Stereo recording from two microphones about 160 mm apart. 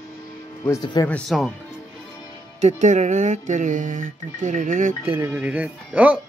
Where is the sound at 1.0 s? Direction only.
25° left (ahead or behind).